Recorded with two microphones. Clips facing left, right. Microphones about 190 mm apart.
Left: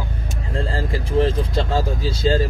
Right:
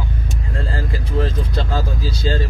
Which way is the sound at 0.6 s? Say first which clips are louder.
Left 3 dB; 30° left (ahead or behind).